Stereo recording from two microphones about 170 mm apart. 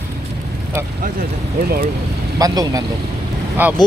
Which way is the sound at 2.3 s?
20° right (ahead or behind).